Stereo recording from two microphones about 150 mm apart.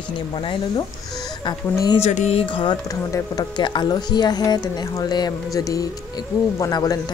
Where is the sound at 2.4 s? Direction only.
35° left (ahead or behind).